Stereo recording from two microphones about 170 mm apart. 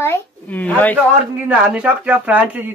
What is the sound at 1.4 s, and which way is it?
Speech, 10° right (ahead or behind).